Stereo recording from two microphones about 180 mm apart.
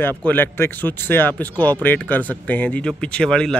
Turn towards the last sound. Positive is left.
turn(degrees=5)  # may be behind; listen again after turning